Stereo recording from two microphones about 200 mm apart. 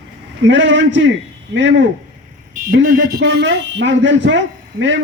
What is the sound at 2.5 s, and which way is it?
Speech, 45° right (ahead or behind).